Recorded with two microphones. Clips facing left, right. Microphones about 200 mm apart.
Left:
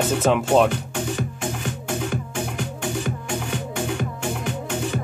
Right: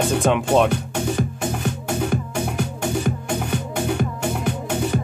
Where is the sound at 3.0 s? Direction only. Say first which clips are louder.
Right 3 dB; 55° right (ahead or behind).